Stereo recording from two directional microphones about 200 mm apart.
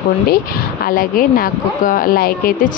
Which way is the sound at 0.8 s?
45° left (ahead or behind).